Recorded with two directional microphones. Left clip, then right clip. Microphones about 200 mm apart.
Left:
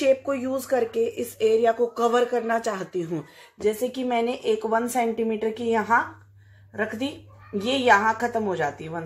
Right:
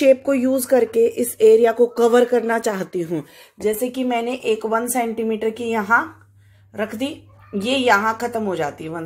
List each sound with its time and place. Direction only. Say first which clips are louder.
0.0 s speech: right 7 dB; 45° right (ahead or behind)